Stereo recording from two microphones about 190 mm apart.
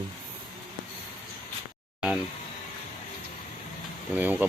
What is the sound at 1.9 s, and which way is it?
Speech, 5° right (ahead or behind).